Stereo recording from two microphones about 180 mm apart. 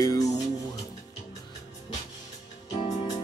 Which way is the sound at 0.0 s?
20° left (ahead or behind).